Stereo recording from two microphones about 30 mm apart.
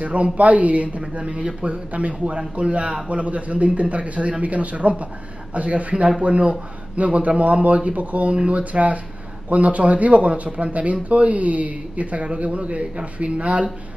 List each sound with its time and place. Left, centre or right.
0.0 s speech: right
3.1 s speech: right